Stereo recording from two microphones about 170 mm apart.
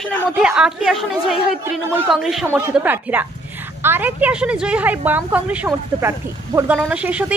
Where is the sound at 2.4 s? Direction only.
10° right (ahead or behind).